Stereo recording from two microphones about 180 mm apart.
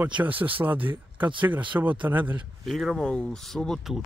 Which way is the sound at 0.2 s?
10° right (ahead or behind).